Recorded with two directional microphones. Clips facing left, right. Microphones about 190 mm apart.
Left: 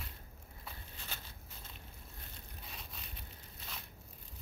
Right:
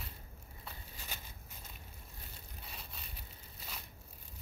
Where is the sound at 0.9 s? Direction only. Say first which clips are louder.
Even; 10° right (ahead or behind).